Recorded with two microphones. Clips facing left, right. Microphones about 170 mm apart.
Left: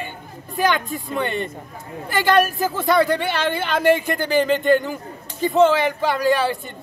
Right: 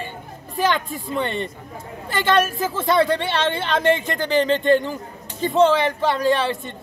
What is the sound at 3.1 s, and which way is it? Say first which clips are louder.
Speech: even; 25° right (ahead or behind).